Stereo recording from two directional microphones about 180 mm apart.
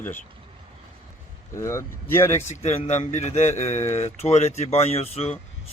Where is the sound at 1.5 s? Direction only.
15° left (ahead or behind).